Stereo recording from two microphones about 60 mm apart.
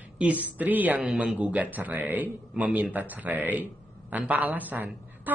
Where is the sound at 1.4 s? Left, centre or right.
Right.